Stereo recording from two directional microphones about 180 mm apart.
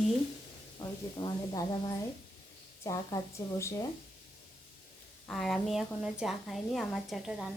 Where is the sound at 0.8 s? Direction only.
25° left (ahead or behind).